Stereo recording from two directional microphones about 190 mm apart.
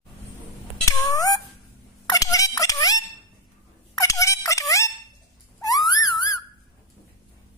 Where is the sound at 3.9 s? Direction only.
15° left (ahead or behind).